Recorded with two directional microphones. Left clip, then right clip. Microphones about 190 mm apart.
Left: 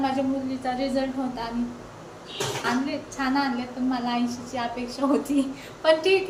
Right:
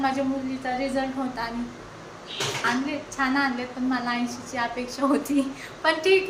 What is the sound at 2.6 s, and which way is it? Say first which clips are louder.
A woman's voice: right 1 dB; 5° right (ahead or behind).